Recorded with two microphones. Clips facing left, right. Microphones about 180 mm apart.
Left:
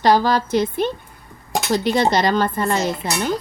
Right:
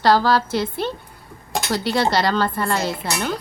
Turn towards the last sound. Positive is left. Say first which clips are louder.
# left 2 dB
turn(degrees=15)  # may be behind; listen again after turning